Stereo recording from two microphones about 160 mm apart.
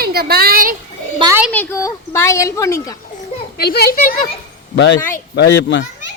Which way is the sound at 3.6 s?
75° left (ahead or behind).